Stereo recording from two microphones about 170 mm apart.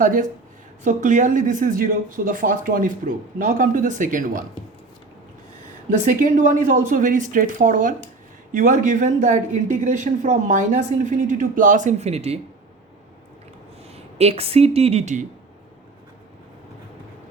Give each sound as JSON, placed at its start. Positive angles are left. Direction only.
{"t": 0.0, "sound": "speech", "side_deg": -50}
{"t": 5.9, "sound": "speech", "side_deg": -50}
{"t": 13.9, "sound": "speech", "side_deg": -35}